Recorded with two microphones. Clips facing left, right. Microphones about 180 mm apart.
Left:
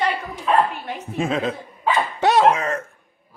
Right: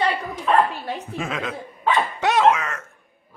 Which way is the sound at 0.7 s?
35° right (ahead or behind).